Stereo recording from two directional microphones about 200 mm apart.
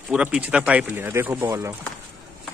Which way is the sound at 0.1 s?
5° right (ahead or behind).